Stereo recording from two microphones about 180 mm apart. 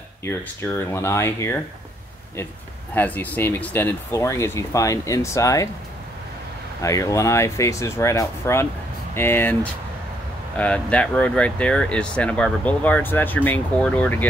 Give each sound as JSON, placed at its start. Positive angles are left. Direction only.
{"t": 0.2, "sound": "speech", "side_deg": 15}
{"t": 2.9, "sound": "speech", "side_deg": 10}
{"t": 6.8, "sound": "speech", "side_deg": 20}